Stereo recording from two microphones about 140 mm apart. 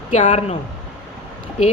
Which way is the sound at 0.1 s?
60° left (ahead or behind).